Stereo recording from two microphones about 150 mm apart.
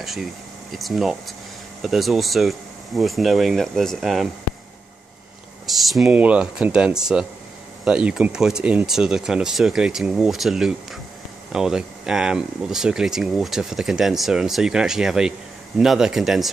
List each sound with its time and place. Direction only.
0.0 s speech: centre (ahead or behind)
5.7 s speech: centre (ahead or behind)